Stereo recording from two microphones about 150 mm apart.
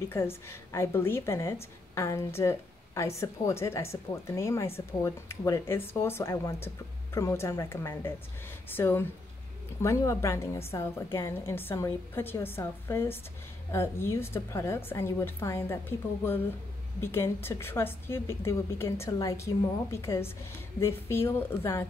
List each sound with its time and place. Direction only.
0.1 s a woman's voice: 15° left (ahead or behind)
17.0 s a woman's voice: 15° left (ahead or behind)